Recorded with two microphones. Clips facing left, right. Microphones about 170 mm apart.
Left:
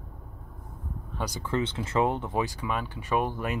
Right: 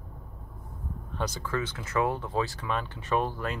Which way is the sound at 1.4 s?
25° left (ahead or behind).